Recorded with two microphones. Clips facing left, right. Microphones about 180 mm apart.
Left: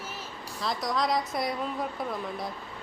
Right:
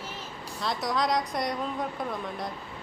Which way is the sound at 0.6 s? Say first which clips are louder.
Right 1 dB; centre (ahead or behind).